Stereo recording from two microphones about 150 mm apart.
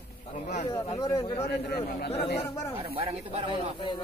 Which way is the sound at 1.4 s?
90° left.